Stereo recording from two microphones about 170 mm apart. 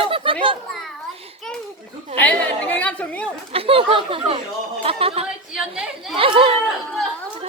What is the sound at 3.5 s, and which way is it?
Speech, 35° right (ahead or behind).